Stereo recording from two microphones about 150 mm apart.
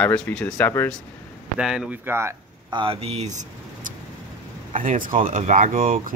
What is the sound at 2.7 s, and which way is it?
Speech, 40° right (ahead or behind).